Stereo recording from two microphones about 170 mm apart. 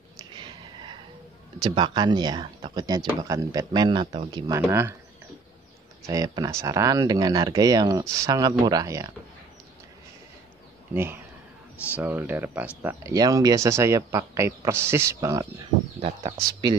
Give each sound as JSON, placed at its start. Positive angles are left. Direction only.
{"t": 0.2, "sound": "a sound", "side_deg": -25}
{"t": 1.6, "sound": "speech", "side_deg": -25}
{"t": 4.5, "sound": "speech", "side_deg": -15}
{"t": 6.0, "sound": "speech", "side_deg": -20}
{"t": 10.9, "sound": "speech", "side_deg": -10}
{"t": 16.0, "sound": "speech", "side_deg": -30}